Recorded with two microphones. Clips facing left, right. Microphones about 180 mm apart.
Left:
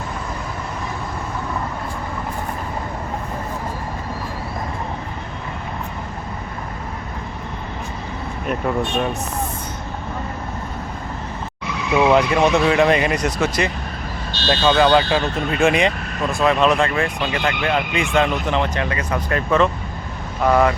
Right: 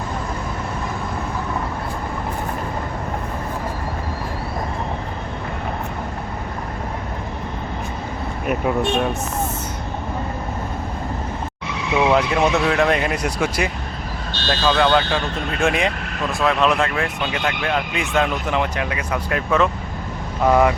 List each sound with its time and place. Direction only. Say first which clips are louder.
8.4 s speech: right 2 dB; 5° right (ahead or behind)
12.0 s speech: left 2 dB; centre (ahead or behind); by 20.7 s 15° right (ahead or behind)